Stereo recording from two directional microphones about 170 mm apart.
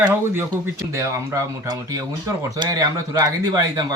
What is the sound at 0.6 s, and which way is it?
Speech, 20° right (ahead or behind).